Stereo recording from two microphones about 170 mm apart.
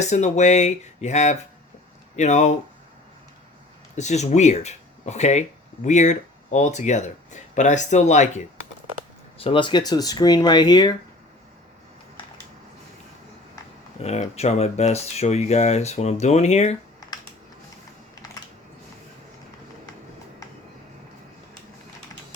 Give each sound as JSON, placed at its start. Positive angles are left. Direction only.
{"t": 0.0, "sound": "speech", "side_deg": 40}
{"t": 3.9, "sound": "speech", "side_deg": 45}
{"t": 9.4, "sound": "speech", "side_deg": 30}
{"t": 14.0, "sound": "speech", "side_deg": 40}